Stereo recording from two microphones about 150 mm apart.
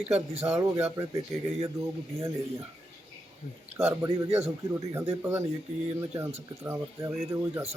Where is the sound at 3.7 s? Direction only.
20° right (ahead or behind).